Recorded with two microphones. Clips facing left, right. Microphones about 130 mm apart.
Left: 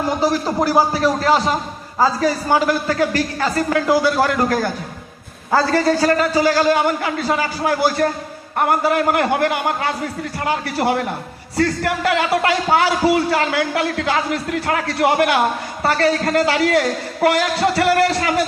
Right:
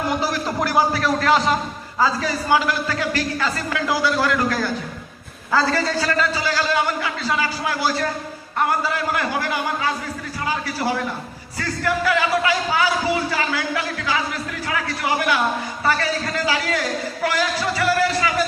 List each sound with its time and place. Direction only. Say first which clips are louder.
0.2 s a man's voice: left 5 dB; 30° left (ahead or behind); by 18.4 s 65° left (ahead or behind)